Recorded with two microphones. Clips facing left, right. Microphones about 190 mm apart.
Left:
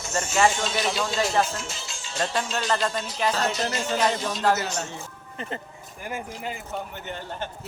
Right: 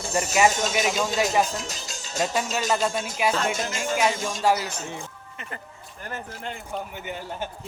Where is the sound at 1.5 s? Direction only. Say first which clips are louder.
Right 2 dB; 40° right (ahead or behind).